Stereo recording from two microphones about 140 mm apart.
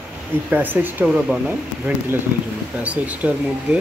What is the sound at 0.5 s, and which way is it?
Speech, 15° right (ahead or behind).